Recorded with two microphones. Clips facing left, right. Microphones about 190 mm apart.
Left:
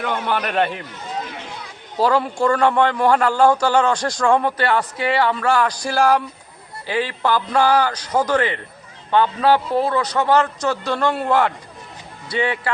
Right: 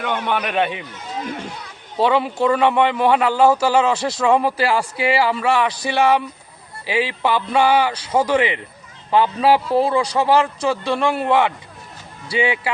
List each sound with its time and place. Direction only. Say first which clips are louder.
0.0 s a man's voice: even; centre (ahead or behind)
2.0 s a man's voice: right 1 dB; centre (ahead or behind)